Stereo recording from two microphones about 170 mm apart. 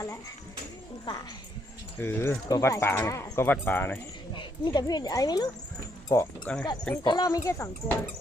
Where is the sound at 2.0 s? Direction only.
10° left (ahead or behind).